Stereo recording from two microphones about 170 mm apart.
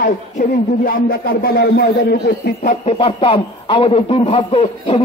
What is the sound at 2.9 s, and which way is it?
A man's voice, 35° left (ahead or behind).